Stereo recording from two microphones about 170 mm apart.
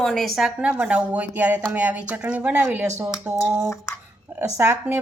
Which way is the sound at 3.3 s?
10° right (ahead or behind).